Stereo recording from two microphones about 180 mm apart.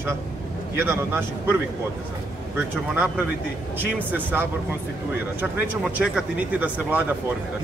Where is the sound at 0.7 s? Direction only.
15° right (ahead or behind).